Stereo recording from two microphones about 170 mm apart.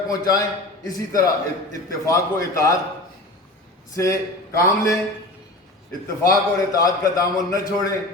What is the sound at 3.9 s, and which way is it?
A man's voice, 20° left (ahead or behind).